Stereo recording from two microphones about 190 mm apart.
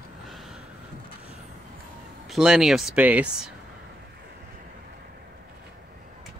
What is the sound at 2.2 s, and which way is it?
Speech, centre (ahead or behind).